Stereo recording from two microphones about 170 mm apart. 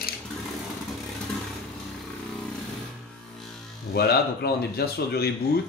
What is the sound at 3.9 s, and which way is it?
Speech, 70° left (ahead or behind).